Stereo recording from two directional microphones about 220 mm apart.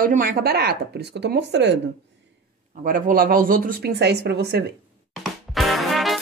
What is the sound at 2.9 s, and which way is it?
Speech, 40° right (ahead or behind).